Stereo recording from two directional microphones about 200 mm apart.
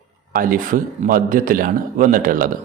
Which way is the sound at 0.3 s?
45° right (ahead or behind).